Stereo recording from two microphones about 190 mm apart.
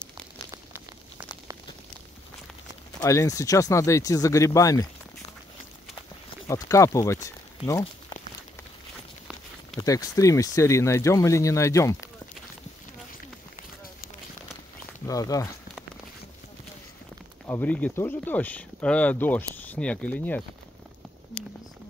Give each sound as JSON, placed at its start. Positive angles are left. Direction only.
{"t": 0.5, "sound": "a sound", "side_deg": -15}
{"t": 3.0, "sound": "speech", "side_deg": 15}
{"t": 6.4, "sound": "speech", "side_deg": 15}
{"t": 9.8, "sound": "speech", "side_deg": 20}
{"t": 15.0, "sound": "speech", "side_deg": 20}
{"t": 17.5, "sound": "speech", "side_deg": 10}